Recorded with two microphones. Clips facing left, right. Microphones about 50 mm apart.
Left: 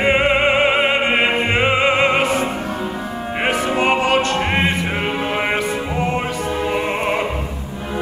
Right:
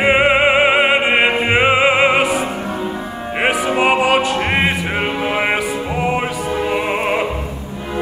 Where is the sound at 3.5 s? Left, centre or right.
Centre.